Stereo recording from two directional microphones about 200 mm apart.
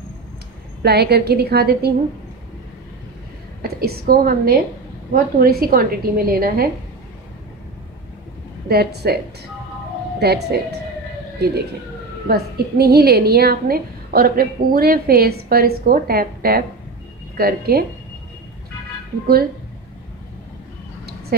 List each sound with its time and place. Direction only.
0.8 s a woman's voice: 55° right (ahead or behind)
3.6 s a woman's voice: 50° right (ahead or behind)
8.6 s a woman's voice: 50° right (ahead or behind)
12.3 s a woman's voice: 50° right (ahead or behind)